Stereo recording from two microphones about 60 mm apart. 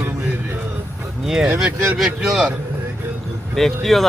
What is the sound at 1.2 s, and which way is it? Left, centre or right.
Speech, centre.